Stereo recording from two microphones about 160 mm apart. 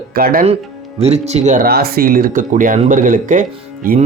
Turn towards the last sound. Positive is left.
turn(degrees=-60)  # may be behind; listen again after turning